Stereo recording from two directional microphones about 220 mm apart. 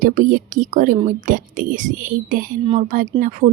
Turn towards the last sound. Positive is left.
turn(degrees=-35)  # may be behind; listen again after turning